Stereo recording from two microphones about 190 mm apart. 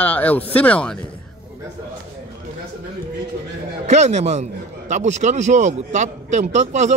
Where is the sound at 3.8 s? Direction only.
35° right (ahead or behind).